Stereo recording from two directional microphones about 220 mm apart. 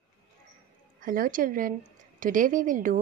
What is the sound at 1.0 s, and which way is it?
A woman's voice, 40° right (ahead or behind).